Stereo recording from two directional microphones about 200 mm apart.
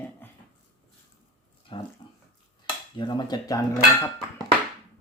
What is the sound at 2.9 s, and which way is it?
Speech, 25° left (ahead or behind).